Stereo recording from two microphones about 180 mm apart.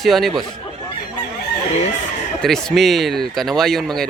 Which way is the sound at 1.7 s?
40° left (ahead or behind).